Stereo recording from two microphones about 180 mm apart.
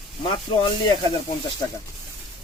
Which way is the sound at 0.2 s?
25° left (ahead or behind).